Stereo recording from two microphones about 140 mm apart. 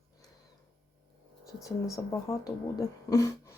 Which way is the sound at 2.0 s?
20° left (ahead or behind).